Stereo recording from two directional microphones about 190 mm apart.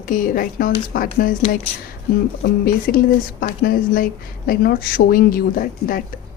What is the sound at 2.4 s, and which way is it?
Speech, 50° left (ahead or behind).